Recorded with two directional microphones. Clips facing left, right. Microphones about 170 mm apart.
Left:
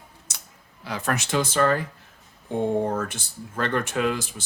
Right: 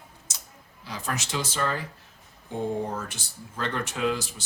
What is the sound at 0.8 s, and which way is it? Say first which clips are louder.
Speech: left 6 dB; 65° left (ahead or behind).